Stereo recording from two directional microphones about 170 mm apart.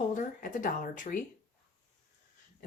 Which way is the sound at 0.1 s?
50° left (ahead or behind).